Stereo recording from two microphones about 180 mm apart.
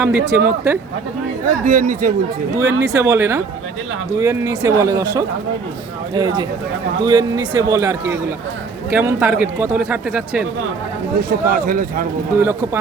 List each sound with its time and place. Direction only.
0.0 s a man's voice: 15° right (ahead or behind)
1.5 s speech: 50° right (ahead or behind)
2.6 s a man's voice: 15° right (ahead or behind)
11.2 s speech: 55° right (ahead or behind)